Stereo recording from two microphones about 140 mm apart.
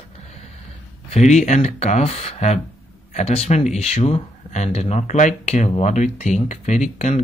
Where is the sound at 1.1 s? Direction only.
55° left (ahead or behind).